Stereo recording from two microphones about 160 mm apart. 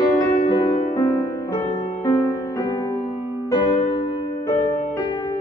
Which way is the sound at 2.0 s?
15° left (ahead or behind).